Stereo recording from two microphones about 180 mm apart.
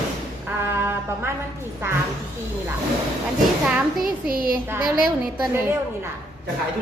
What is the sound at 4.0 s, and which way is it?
Speech, 55° right (ahead or behind).